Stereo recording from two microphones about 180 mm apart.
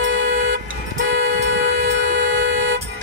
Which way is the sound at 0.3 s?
50° right (ahead or behind).